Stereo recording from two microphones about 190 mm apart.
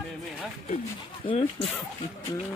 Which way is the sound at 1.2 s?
30° left (ahead or behind).